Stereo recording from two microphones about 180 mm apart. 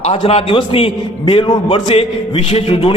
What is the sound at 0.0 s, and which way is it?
A man's voice, 35° left (ahead or behind).